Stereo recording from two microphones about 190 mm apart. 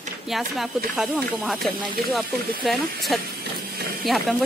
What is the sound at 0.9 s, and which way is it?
Speech, centre (ahead or behind).